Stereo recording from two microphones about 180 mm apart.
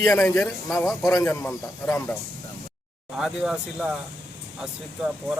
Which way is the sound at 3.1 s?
Centre (ahead or behind).